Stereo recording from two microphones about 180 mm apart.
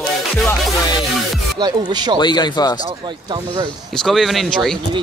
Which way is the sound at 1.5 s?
25° right (ahead or behind).